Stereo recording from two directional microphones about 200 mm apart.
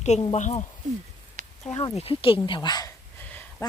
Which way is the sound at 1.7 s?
30° left (ahead or behind).